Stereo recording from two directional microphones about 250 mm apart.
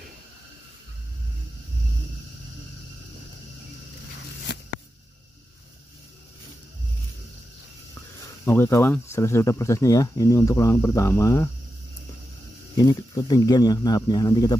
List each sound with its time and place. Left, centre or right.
8.5 s speech: centre
12.7 s speech: centre